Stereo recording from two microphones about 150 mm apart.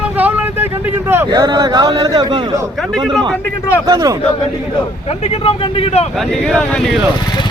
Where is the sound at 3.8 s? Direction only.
25° right (ahead or behind).